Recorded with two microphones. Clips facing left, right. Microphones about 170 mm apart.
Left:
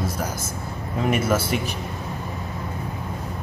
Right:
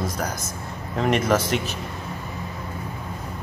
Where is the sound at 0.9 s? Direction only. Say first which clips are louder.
Right 1 dB; 5° left (ahead or behind).